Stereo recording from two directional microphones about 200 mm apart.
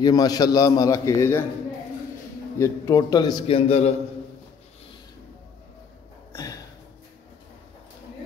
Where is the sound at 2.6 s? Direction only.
20° left (ahead or behind).